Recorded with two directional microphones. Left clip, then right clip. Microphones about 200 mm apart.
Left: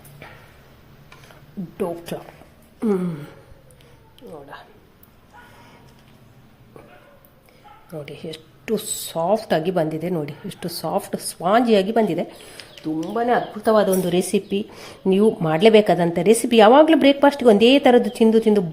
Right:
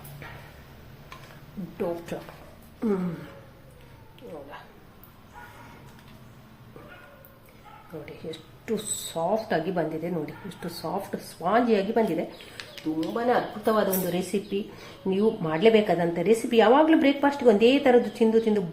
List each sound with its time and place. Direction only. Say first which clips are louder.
8.0 s a woman's voice: left 4 dB; 50° left (ahead or behind)
12.5 s bird: left 3 dB; 5° left (ahead or behind)
13.1 s a woman's voice: left 5 dB; 55° left (ahead or behind)